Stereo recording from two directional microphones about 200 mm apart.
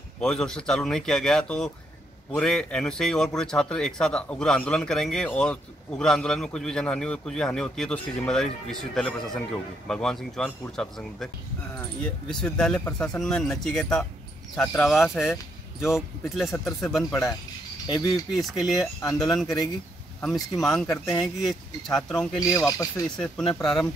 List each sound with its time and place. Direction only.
0.2 s speech: 5° left (ahead or behind)
17.1 s speech: 15° left (ahead or behind)
18.3 s speech: centre (ahead or behind)
18.9 s speech: 15° left (ahead or behind)
19.2 s speech: centre (ahead or behind)
22.4 s speech: 15° left (ahead or behind)
23.0 s speech: 5° left (ahead or behind)